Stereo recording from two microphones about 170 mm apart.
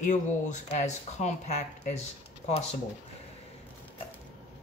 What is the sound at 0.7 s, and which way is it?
Speech, 40° left (ahead or behind).